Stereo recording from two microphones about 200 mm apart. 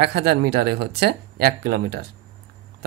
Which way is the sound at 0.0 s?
55° right (ahead or behind).